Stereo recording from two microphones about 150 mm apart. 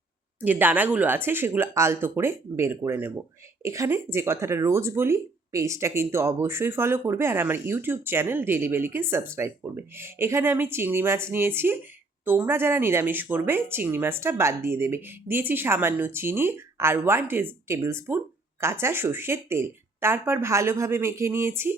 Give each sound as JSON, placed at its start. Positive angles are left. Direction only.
{"t": 0.4, "sound": "speech", "side_deg": -10}